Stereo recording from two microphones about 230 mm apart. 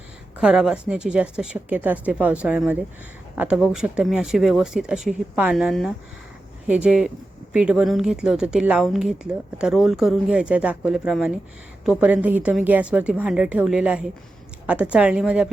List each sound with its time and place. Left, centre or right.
0.3 s a woman's voice: centre